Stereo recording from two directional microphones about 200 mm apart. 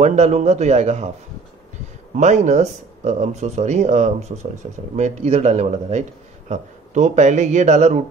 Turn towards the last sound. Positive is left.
turn(degrees=-35)  # may be behind; listen again after turning